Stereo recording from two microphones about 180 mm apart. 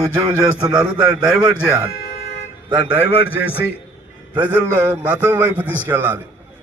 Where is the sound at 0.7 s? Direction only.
5° right (ahead or behind).